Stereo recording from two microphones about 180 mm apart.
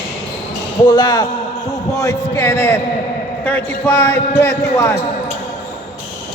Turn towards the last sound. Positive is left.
turn(degrees=15)  # may be behind; listen again after turning